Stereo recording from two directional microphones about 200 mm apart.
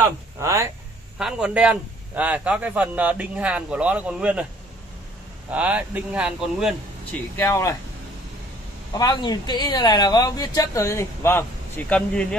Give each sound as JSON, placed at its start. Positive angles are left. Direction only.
{"t": 0.4, "sound": "a man's voice", "side_deg": -15}
{"t": 1.1, "sound": "a man's voice", "side_deg": -5}
{"t": 5.5, "sound": "a man's voice", "side_deg": -5}
{"t": 7.3, "sound": "speech", "side_deg": 15}
{"t": 8.9, "sound": "speech", "side_deg": 20}